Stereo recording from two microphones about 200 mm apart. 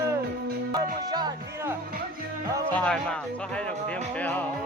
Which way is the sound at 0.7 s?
20° right (ahead or behind).